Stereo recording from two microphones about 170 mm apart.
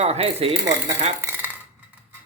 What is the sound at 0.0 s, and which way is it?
Speech, 35° right (ahead or behind).